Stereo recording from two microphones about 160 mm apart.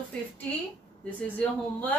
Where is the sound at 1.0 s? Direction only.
10° left (ahead or behind).